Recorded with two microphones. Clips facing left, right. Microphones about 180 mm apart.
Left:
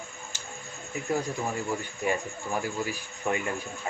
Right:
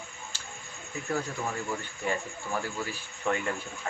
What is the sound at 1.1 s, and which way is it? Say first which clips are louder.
Speech: left 3 dB; 15° left (ahead or behind).